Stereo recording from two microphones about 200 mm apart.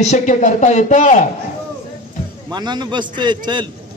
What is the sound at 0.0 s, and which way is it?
A man's voice, 35° left (ahead or behind).